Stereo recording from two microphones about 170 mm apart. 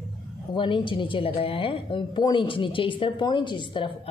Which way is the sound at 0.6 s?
30° left (ahead or behind).